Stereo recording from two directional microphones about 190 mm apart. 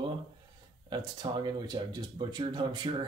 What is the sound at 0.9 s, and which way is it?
Speech, 25° right (ahead or behind).